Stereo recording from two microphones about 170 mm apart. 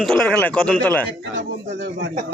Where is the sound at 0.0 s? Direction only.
5° left (ahead or behind).